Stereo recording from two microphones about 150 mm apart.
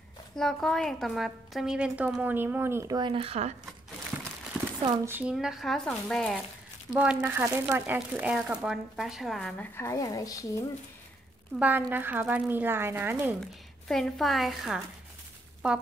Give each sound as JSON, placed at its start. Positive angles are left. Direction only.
{"t": 0.4, "sound": "a woman's voice", "side_deg": 5}
{"t": 3.0, "sound": "speech", "side_deg": -35}
{"t": 5.0, "sound": "speech", "side_deg": -15}
{"t": 5.3, "sound": "a woman's voice", "side_deg": -5}
{"t": 6.9, "sound": "a woman's voice", "side_deg": -10}
{"t": 9.6, "sound": "speech", "side_deg": 20}
{"t": 11.5, "sound": "speech", "side_deg": -10}
{"t": 13.8, "sound": "a woman's voice", "side_deg": 5}